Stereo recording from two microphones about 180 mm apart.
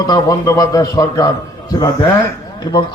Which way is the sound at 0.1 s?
20° left (ahead or behind).